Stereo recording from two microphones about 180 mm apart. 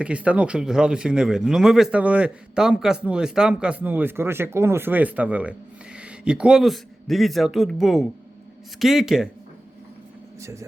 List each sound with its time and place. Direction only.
0.0 s speech: 5° right (ahead or behind)
10.4 s speech: 15° right (ahead or behind)